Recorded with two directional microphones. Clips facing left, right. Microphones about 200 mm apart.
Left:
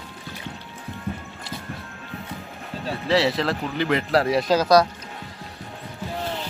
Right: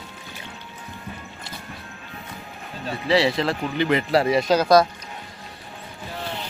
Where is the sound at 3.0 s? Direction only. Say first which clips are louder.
Right 1 dB; centre (ahead or behind).